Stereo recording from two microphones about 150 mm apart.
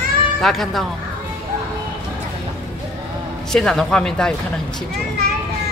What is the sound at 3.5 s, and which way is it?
Speech, 5° left (ahead or behind).